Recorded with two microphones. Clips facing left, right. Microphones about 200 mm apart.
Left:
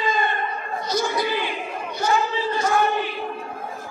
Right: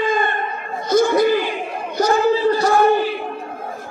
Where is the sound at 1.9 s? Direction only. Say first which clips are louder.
Right 7 dB; 40° right (ahead or behind).